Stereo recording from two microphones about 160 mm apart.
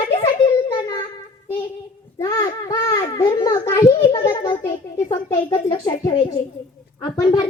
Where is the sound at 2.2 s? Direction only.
20° left (ahead or behind).